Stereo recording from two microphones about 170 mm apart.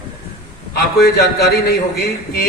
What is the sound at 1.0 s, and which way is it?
Speech, 65° left (ahead or behind).